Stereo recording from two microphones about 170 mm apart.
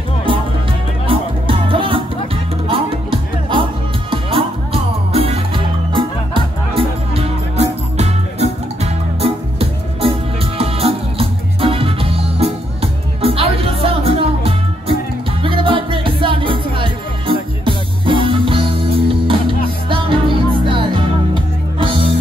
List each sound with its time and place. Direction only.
1.0 s music: 30° right (ahead or behind)